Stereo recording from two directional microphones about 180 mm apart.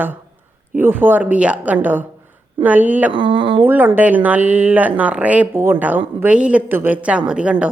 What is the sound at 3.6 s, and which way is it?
A woman's voice, 10° right (ahead or behind).